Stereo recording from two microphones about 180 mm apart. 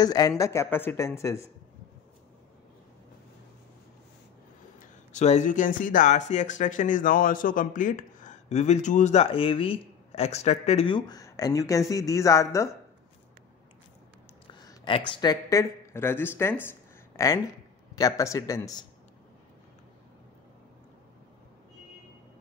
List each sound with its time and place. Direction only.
0.0 s speech: 20° left (ahead or behind)
4.7 s speech: 40° left (ahead or behind); by 12.6 s 15° left (ahead or behind)
14.5 s speech: 25° left (ahead or behind)